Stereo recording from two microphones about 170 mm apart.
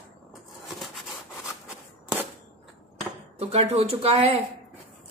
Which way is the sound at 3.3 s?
35° right (ahead or behind).